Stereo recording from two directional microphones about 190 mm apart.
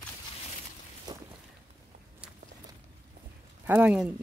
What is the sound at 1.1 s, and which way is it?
Boat, 20° right (ahead or behind).